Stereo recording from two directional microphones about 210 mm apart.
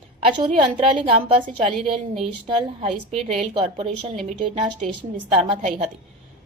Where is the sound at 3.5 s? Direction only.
25° right (ahead or behind).